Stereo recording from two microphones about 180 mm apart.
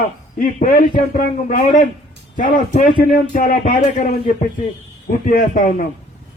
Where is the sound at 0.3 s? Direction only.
45° left (ahead or behind).